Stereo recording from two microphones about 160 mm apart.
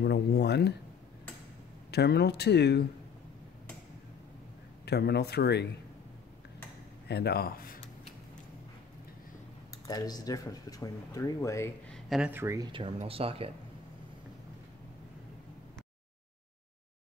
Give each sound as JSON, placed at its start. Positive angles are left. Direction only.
{"t": 0.0, "sound": "speech", "side_deg": 90}
{"t": 1.9, "sound": "speech", "side_deg": 90}
{"t": 4.8, "sound": "speech", "side_deg": 90}
{"t": 7.1, "sound": "speech", "side_deg": 90}
{"t": 9.8, "sound": "speech", "side_deg": 25}
{"t": 11.9, "sound": "a sound", "side_deg": 0}
{"t": 12.3, "sound": "speech", "side_deg": -15}
{"t": 12.7, "sound": "speech", "side_deg": -35}